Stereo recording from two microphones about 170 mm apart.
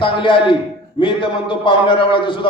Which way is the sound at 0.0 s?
30° left (ahead or behind).